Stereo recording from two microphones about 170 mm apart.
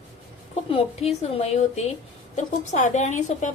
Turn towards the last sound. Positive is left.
turn(degrees=45)  # may be behind; listen again after turning